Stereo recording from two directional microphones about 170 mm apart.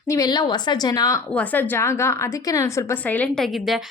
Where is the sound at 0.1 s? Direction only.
25° left (ahead or behind).